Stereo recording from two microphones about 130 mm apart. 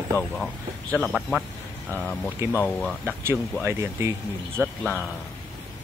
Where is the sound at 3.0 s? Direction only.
15° right (ahead or behind).